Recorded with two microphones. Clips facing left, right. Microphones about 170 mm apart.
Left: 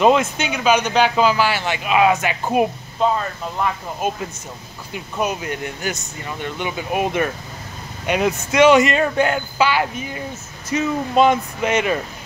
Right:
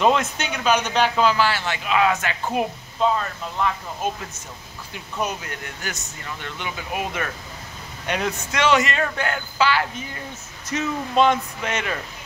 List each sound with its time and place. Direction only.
0.0 s speech: 5° left (ahead or behind)
4.9 s speech: 15° left (ahead or behind)